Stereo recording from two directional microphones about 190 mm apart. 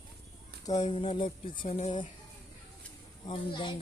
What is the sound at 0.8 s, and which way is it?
Speech, 30° left (ahead or behind).